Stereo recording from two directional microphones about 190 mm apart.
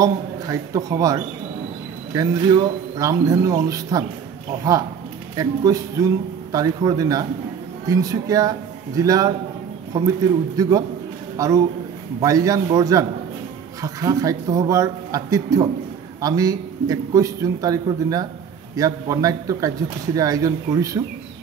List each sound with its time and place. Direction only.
0.0 s a man's voice: 20° right (ahead or behind)
5.3 s a man's voice: 20° right (ahead or behind)